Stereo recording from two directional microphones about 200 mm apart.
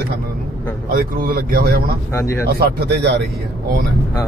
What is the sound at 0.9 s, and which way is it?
Speech, 45° right (ahead or behind).